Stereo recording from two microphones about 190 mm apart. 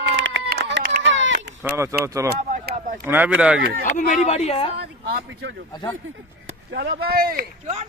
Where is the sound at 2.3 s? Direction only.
55° right (ahead or behind).